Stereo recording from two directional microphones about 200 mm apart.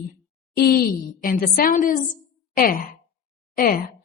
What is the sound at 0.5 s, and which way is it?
A woman's voice, 45° left (ahead or behind).